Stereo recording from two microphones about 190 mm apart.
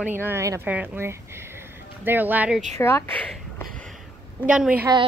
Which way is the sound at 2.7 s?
15° left (ahead or behind).